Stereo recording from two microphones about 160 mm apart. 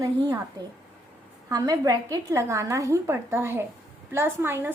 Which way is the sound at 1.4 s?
20° right (ahead or behind).